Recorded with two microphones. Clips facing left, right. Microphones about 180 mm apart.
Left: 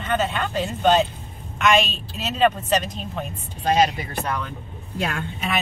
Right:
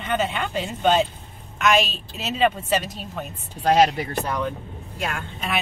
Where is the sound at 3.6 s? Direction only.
70° right (ahead or behind).